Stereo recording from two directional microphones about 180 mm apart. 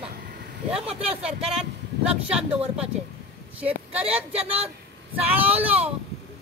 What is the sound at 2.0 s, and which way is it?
Speech, 5° right (ahead or behind).